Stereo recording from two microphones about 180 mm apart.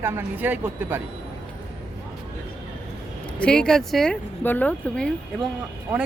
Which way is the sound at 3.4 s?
5° left (ahead or behind).